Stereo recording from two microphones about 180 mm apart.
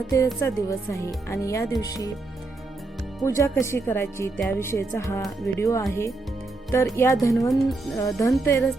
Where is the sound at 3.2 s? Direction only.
15° left (ahead or behind).